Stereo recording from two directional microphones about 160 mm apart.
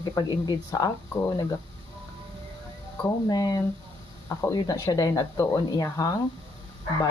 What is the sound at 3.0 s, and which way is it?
Speech, 25° left (ahead or behind).